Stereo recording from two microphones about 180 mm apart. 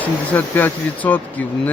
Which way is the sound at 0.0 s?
10° left (ahead or behind).